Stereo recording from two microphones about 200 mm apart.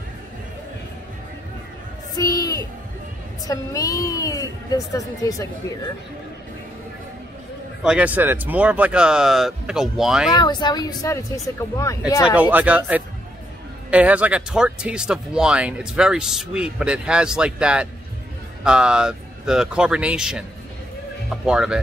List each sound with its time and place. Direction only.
2.1 s music: 20° left (ahead or behind)
3.4 s a woman's voice: 15° left (ahead or behind)
7.8 s speech: 5° right (ahead or behind)
10.3 s speech: 20° left (ahead or behind)
12.3 s speech: 10° right (ahead or behind)